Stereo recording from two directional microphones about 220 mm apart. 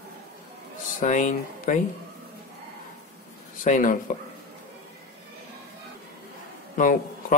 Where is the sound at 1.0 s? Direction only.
35° left (ahead or behind).